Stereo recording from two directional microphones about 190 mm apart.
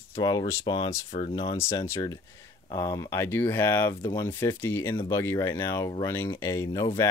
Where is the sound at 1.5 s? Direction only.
15° left (ahead or behind).